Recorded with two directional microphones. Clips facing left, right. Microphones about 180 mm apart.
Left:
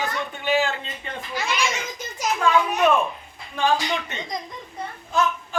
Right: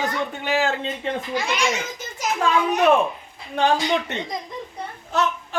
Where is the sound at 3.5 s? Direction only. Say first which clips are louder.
Right 3 dB; 70° right (ahead or behind).